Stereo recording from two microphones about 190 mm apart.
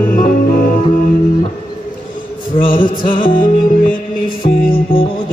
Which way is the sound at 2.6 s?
50° left (ahead or behind).